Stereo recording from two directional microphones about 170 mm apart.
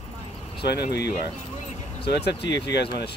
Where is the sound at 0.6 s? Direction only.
75° left (ahead or behind).